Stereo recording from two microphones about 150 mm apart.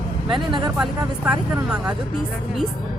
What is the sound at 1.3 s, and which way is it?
Speech, 10° right (ahead or behind).